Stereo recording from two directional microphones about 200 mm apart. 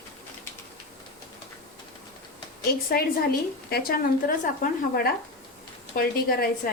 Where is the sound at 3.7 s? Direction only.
50° left (ahead or behind).